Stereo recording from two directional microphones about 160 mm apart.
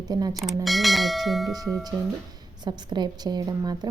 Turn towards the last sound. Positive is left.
turn(degrees=-25)  # may be behind; listen again after turning